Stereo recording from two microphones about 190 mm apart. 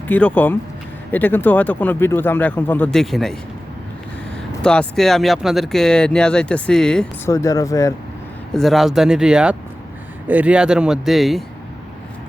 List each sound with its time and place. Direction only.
0.1 s speech: 10° left (ahead or behind)
4.6 s speech: 5° left (ahead or behind)
7.3 s speech: 15° left (ahead or behind)
8.5 s speech: centre (ahead or behind)